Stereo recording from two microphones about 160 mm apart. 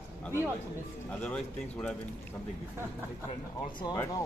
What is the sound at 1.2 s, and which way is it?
Speech, 5° left (ahead or behind).